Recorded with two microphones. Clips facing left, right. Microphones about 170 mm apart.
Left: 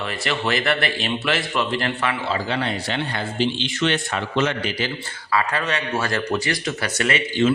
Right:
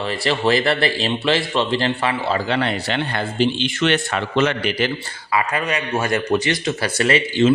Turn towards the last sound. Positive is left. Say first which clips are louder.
# right 4 dB
turn(degrees=-30)  # may be behind; listen again after turning